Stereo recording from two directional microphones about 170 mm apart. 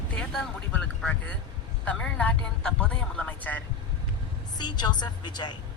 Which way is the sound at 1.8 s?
5° left (ahead or behind).